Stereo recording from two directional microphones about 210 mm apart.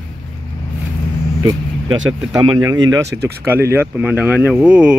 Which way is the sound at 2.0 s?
20° right (ahead or behind).